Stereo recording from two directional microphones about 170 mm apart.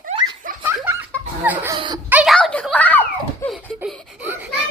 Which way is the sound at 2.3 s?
5° left (ahead or behind).